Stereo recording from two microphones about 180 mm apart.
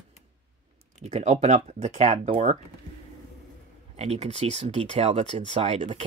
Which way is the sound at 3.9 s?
35° right (ahead or behind).